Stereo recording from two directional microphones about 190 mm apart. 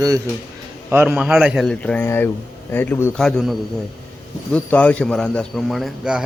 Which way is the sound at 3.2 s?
Centre (ahead or behind).